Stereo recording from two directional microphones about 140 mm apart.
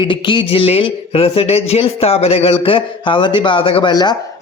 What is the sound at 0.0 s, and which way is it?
A man's voice, 35° left (ahead or behind).